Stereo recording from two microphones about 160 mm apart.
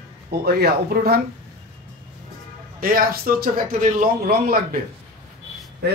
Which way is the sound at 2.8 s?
65° right (ahead or behind).